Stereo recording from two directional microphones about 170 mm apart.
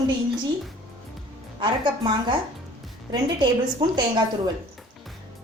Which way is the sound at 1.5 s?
30° right (ahead or behind).